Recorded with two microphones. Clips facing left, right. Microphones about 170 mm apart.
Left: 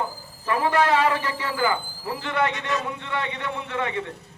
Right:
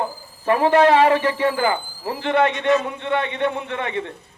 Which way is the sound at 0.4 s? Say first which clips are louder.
Right 7 dB; 25° right (ahead or behind).